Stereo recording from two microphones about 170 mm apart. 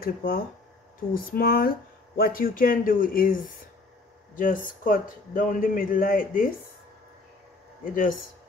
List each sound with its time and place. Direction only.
0.0 s speech: 60° left (ahead or behind)
7.8 s speech: 50° left (ahead or behind)